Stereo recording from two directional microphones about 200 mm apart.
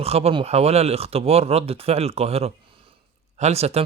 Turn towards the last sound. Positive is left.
turn(degrees=-30)  # may be behind; listen again after turning